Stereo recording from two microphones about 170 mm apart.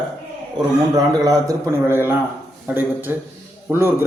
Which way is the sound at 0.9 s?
20° right (ahead or behind).